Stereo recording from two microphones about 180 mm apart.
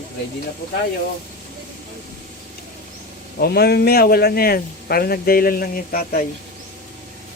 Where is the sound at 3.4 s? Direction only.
60° left (ahead or behind).